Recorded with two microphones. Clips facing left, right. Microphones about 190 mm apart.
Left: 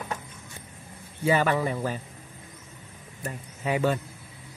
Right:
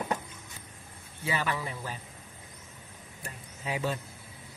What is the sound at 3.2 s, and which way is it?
Speech, 60° left (ahead or behind).